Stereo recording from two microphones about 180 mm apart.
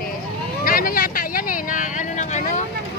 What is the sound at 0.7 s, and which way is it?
Vehicle, 50° left (ahead or behind).